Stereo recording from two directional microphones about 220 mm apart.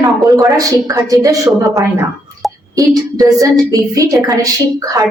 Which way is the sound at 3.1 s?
15° right (ahead or behind).